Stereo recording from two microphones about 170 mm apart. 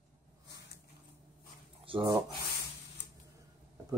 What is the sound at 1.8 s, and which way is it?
Speech, 30° right (ahead or behind).